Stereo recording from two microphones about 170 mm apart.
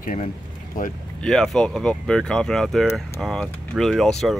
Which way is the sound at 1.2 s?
5° left (ahead or behind).